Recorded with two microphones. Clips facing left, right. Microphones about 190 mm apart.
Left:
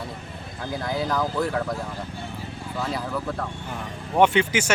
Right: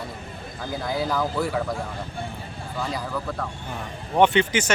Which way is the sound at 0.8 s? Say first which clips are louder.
Even; 5° right (ahead or behind).